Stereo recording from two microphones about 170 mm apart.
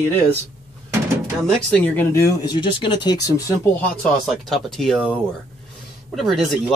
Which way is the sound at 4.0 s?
Centre (ahead or behind).